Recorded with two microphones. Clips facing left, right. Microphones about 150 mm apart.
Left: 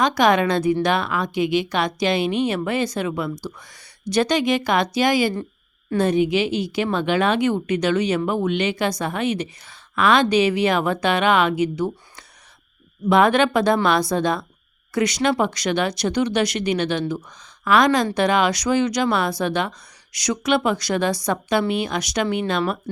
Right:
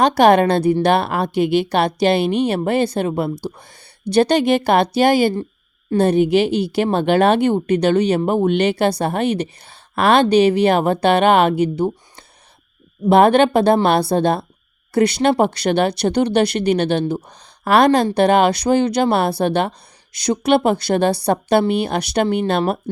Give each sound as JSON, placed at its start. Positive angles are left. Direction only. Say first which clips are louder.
{"t": 0.2, "sound": "a woman's voice", "louder": "right 6 dB", "side_deg": -35}
{"t": 13.1, "sound": "a woman's voice", "louder": "right 5 dB", "side_deg": -30}